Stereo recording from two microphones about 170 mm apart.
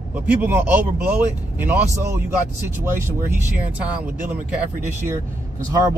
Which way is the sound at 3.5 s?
10° right (ahead or behind).